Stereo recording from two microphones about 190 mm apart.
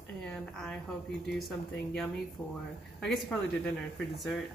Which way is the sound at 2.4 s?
20° left (ahead or behind).